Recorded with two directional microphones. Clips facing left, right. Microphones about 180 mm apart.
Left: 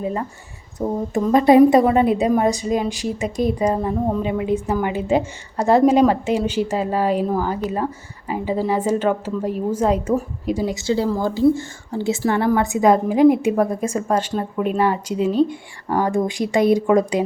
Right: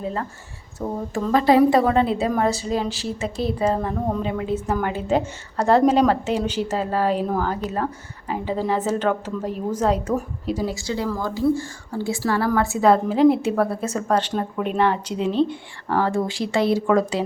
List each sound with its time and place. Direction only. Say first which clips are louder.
0.0 s a woman's voice: left 3 dB; 10° left (ahead or behind)